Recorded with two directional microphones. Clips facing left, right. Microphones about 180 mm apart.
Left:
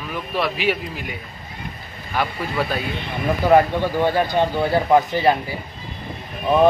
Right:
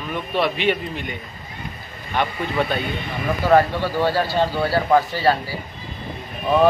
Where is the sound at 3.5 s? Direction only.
15° left (ahead or behind).